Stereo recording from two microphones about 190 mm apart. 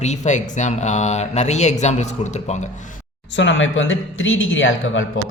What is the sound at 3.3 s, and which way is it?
Speech, 75° left (ahead or behind).